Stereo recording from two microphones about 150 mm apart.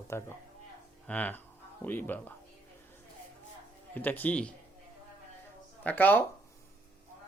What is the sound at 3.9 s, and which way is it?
Speech, 10° left (ahead or behind).